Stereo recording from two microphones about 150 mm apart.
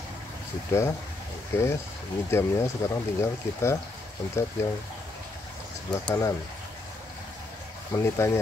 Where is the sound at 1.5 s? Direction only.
15° left (ahead or behind).